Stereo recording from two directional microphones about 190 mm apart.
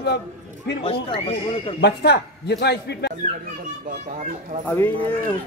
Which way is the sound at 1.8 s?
60° left (ahead or behind).